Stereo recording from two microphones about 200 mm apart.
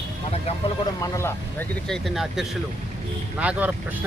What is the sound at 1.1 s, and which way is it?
Speech, 10° left (ahead or behind).